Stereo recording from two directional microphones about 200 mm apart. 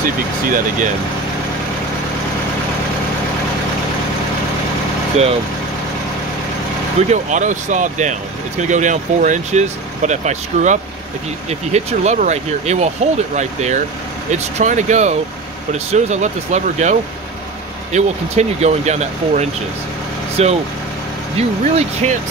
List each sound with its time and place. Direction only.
0.0 s speech: 45° right (ahead or behind)
7.0 s speech: 35° right (ahead or behind)
17.9 s speech: 35° right (ahead or behind)